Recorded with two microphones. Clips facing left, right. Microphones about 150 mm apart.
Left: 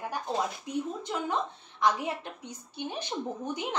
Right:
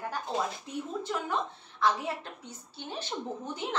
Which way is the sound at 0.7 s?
15° left (ahead or behind).